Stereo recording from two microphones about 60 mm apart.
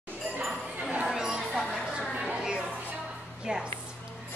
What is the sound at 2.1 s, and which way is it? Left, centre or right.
Music, centre.